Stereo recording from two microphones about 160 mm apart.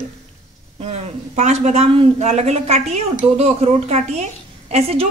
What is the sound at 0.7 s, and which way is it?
A woman's voice, 40° right (ahead or behind).